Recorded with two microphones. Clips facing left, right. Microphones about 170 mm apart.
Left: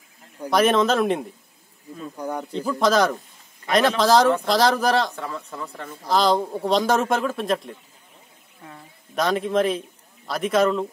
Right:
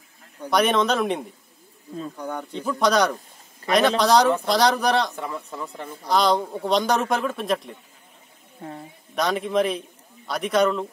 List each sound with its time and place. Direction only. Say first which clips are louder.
0.4 s a man's voice: left 2 dB; centre (ahead or behind)
5.1 s speech: even; 15° right (ahead or behind)
6.0 s a man's voice: left 1 dB; centre (ahead or behind)
8.5 s a sound: right 7 dB; 35° right (ahead or behind)
9.1 s a man's voice: left 1 dB; centre (ahead or behind)